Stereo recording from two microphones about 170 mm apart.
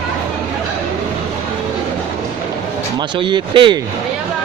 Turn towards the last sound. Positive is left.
turn(degrees=-30)  # may be behind; listen again after turning